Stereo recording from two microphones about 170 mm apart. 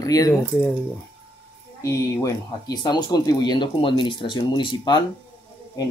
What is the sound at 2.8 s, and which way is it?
Speech, 25° left (ahead or behind).